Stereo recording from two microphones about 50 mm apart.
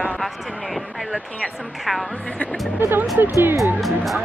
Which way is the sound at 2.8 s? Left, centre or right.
Right.